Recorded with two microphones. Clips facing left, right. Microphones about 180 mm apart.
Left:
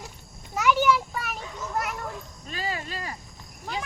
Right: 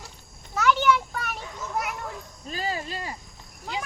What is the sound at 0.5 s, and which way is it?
Children playing, 10° left (ahead or behind).